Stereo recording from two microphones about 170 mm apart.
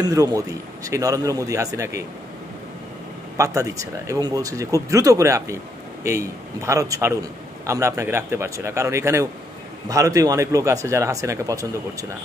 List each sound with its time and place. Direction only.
0.0 s speech: 20° right (ahead or behind)
3.3 s a man's voice: 20° right (ahead or behind)